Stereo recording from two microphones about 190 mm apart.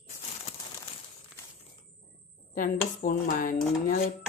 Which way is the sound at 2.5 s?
50° left (ahead or behind).